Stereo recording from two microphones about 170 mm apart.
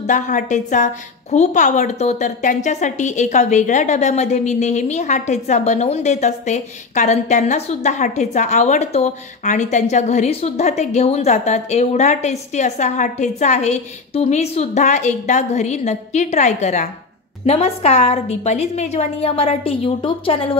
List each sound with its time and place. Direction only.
0.0 s a woman's voice: 50° left (ahead or behind); by 20.5 s 35° left (ahead or behind)